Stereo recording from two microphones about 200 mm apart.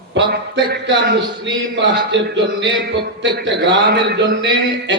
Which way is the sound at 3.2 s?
60° right (ahead or behind).